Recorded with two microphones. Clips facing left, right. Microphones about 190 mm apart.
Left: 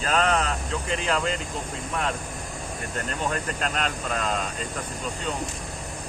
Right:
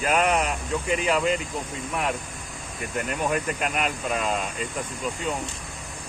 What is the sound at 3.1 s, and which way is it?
Speech, 10° right (ahead or behind).